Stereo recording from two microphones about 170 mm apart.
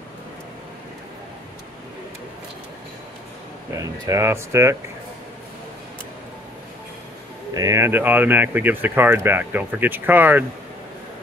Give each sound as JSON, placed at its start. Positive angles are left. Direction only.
{"t": 3.7, "sound": "speech", "side_deg": -15}
{"t": 7.5, "sound": "speech", "side_deg": -20}